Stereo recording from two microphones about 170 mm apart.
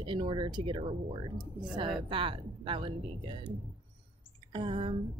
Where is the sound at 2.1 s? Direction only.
30° right (ahead or behind).